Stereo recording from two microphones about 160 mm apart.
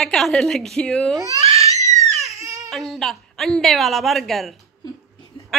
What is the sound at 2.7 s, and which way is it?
A woman's voice, centre (ahead or behind).